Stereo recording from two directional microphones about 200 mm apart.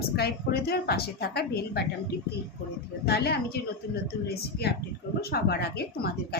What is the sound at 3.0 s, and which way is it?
A woman's voice, 55° left (ahead or behind).